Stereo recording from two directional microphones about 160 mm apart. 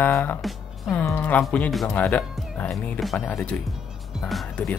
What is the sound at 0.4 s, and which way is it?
Music, centre (ahead or behind).